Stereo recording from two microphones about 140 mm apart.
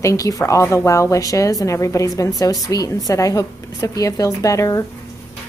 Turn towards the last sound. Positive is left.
turn(degrees=20)  # may be behind; listen again after turning